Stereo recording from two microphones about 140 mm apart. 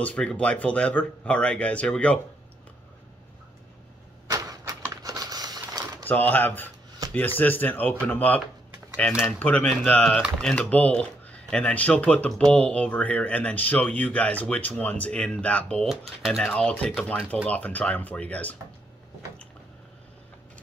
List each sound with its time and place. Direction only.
0.0 s speech: 10° left (ahead or behind)
4.3 s a sound: 25° right (ahead or behind)
6.0 s speech: 10° left (ahead or behind)